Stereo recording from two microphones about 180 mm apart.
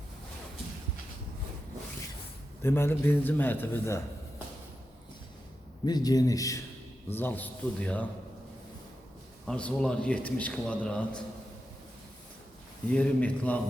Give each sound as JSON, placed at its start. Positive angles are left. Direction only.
{"t": 2.6, "sound": "a man's voice", "side_deg": 15}
{"t": 5.8, "sound": "a man's voice", "side_deg": 20}
{"t": 9.5, "sound": "a man's voice", "side_deg": 5}
{"t": 12.9, "sound": "a man's voice", "side_deg": 5}